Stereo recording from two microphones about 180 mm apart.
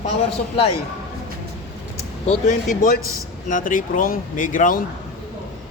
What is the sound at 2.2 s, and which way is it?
Speech, 45° left (ahead or behind).